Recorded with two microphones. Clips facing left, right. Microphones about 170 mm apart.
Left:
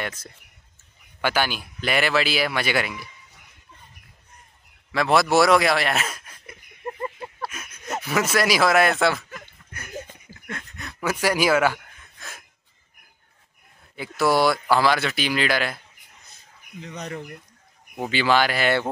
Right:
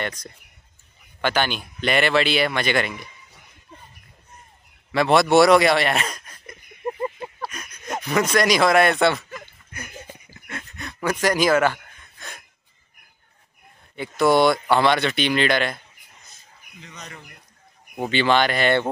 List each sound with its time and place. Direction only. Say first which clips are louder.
0.0 s speech: right 2 dB; 5° left (ahead or behind)
4.9 s speech: right 3 dB; centre (ahead or behind)
7.2 s a sound: right 1 dB; centre (ahead or behind)
10.5 s gasp: right 1 dB; centre (ahead or behind)
13.9 s speech: right 3 dB; 5° left (ahead or behind)
16.8 s speech: left 9 dB; 55° left (ahead or behind)
17.9 s speech: right 1 dB; 5° left (ahead or behind)